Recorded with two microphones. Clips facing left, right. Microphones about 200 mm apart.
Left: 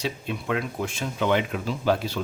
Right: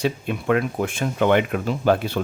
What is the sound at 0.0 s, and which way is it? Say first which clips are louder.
Speech: right 6 dB; 55° right (ahead or behind).